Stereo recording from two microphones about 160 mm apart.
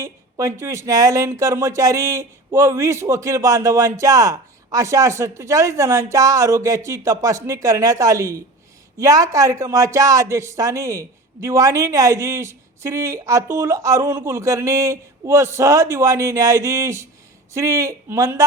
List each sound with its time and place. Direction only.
0.0 s speech: 20° right (ahead or behind)